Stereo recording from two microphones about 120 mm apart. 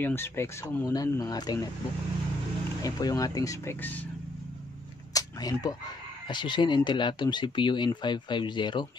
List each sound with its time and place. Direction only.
0.0 s speech: 20° left (ahead or behind)
2.8 s speech: 30° left (ahead or behind)
5.1 s a sound: 30° left (ahead or behind)
6.2 s speech: 40° left (ahead or behind)